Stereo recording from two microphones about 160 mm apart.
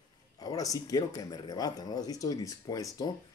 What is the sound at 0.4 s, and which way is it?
Speech, 20° left (ahead or behind).